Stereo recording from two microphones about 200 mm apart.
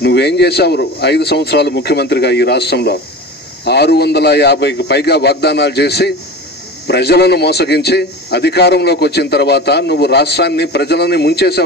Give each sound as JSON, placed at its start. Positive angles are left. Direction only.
{"t": 0.0, "sound": "a man's voice", "side_deg": 55}